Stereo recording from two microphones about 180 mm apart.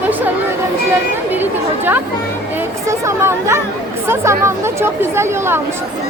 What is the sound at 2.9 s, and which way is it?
Speech, 15° right (ahead or behind).